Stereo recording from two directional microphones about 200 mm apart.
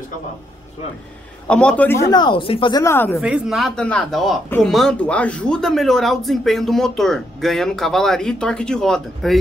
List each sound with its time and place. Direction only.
1.5 s speech: 5° left (ahead or behind); by 2.8 s 25° left (ahead or behind)
2.8 s speech: 15° left (ahead or behind)
3.2 s speech: centre (ahead or behind)